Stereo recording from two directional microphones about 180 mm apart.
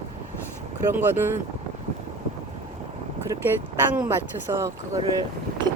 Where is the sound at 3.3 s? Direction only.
20° right (ahead or behind).